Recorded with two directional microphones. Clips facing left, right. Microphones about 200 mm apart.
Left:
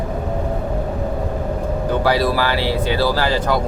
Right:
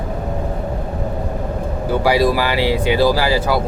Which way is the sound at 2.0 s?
15° right (ahead or behind).